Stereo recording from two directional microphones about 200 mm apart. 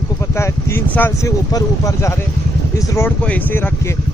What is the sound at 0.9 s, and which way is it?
Speech, 15° left (ahead or behind).